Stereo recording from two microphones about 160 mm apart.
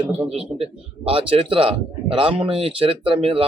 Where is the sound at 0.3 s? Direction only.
40° right (ahead or behind).